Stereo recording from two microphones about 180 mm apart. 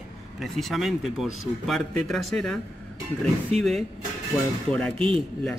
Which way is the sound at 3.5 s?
35° right (ahead or behind).